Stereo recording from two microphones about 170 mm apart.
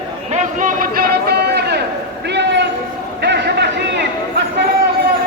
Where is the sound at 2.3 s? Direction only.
90° right.